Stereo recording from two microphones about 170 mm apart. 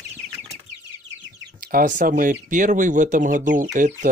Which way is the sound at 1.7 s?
50° right (ahead or behind).